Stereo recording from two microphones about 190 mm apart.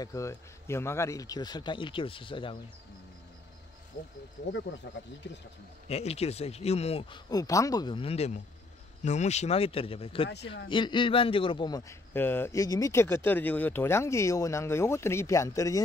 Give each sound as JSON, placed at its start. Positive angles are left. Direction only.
{"t": 0.0, "sound": "speech", "side_deg": 20}
{"t": 4.7, "sound": "speech", "side_deg": 75}
{"t": 5.9, "sound": "a man's voice", "side_deg": 35}